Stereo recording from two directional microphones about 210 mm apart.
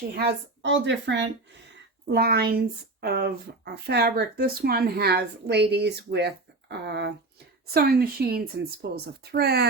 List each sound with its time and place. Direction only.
0.2 s a woman's voice: 55° right (ahead or behind)